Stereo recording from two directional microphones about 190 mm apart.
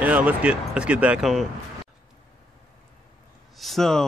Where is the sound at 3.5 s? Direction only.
Centre (ahead or behind).